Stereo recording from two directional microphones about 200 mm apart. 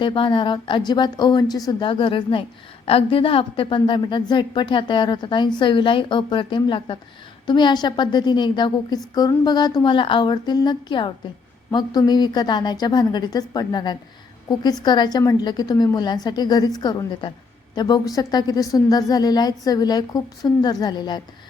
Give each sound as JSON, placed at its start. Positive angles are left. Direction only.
{"t": 0.0, "sound": "a woman's voice", "side_deg": 25}